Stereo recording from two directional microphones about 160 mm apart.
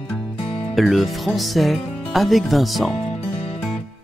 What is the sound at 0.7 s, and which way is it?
Speech, centre (ahead or behind).